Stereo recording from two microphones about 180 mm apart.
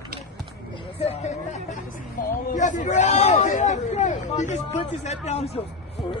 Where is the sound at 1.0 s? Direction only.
35° left (ahead or behind).